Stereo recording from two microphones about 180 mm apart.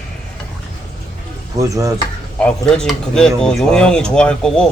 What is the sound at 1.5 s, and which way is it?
Speech, 20° right (ahead or behind).